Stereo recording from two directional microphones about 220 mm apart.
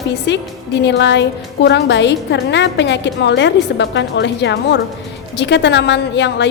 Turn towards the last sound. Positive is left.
turn(degrees=50)  # may be behind; listen again after turning